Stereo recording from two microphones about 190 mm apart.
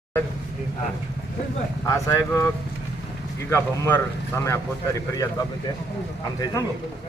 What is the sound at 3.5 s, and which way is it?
A man's voice, 10° left (ahead or behind).